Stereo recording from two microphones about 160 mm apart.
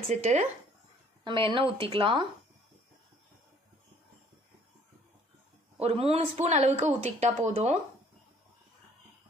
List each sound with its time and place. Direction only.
0.1 s a woman's voice: 50° right (ahead or behind)
1.2 s speech: 30° right (ahead or behind)
5.8 s a woman's voice: 40° right (ahead or behind)